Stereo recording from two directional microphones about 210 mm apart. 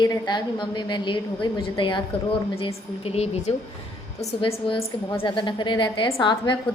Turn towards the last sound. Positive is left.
turn(degrees=20)  # may be behind; listen again after turning